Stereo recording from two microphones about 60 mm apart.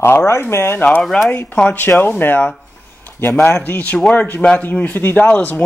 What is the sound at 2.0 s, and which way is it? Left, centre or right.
Speech, left.